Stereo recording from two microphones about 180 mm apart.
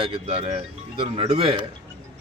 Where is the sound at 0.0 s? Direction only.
30° right (ahead or behind).